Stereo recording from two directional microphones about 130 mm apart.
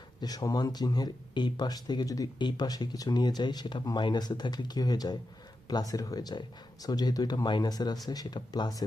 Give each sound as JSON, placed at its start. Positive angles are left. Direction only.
{"t": 0.2, "sound": "speech", "side_deg": 30}